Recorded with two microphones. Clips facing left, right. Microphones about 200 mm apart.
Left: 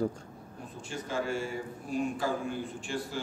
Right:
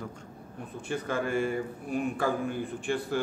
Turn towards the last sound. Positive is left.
turn(degrees=-55)  # may be behind; listen again after turning